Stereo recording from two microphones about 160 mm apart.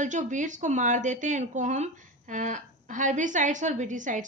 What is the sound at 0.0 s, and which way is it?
A woman's voice, 50° right (ahead or behind).